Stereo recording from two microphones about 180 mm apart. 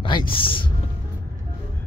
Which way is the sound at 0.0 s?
25° left (ahead or behind).